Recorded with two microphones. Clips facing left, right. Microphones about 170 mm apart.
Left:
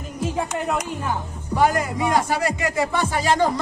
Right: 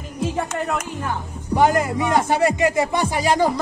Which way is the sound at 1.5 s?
25° right (ahead or behind).